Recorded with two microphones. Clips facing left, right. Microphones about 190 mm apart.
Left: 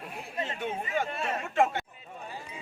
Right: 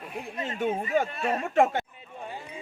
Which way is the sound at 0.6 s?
40° right (ahead or behind).